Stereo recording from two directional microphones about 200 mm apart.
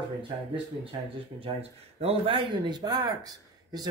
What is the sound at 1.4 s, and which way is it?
Speech, 30° right (ahead or behind).